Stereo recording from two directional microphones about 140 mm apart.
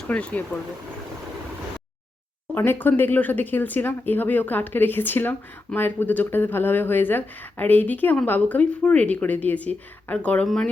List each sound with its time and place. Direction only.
0.0 s speech: 10° left (ahead or behind)
2.6 s speech: 15° left (ahead or behind)